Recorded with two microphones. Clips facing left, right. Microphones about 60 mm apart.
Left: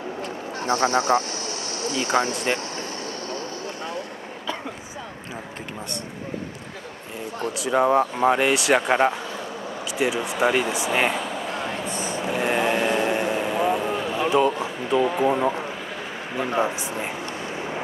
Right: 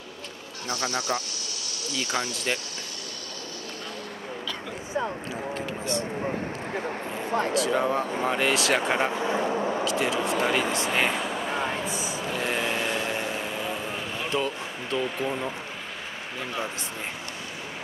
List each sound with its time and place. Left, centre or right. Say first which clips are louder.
0.7 s speech: left 8 dB; left
7.7 s speech: left 6 dB; centre
9.8 s vehicle: left 1 dB; centre
12.4 s vehicle: left 6 dB; left
14.1 s speech: left 9 dB; centre
15.2 s speech: left 9 dB; left